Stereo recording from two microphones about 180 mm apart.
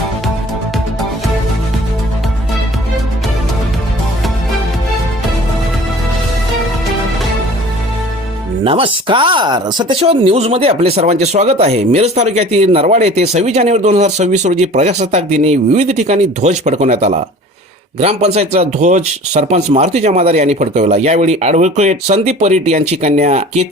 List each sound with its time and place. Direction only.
8.6 s speech: 30° right (ahead or behind)
10.0 s speech: 35° right (ahead or behind)